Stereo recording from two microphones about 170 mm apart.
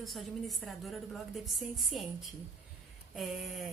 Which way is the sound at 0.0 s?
Centre (ahead or behind).